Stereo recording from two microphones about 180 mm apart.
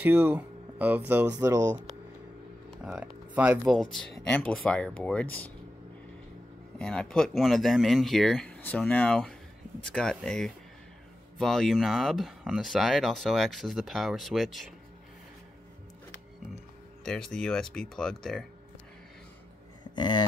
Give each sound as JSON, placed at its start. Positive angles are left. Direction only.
{"t": 0.0, "sound": "speech", "side_deg": -10}
{"t": 2.8, "sound": "speech", "side_deg": -5}
{"t": 6.8, "sound": "speech", "side_deg": 5}
{"t": 17.0, "sound": "speech", "side_deg": 5}
{"t": 20.0, "sound": "a sound", "side_deg": 25}